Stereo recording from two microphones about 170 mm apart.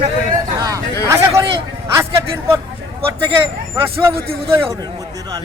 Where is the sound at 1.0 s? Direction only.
15° right (ahead or behind).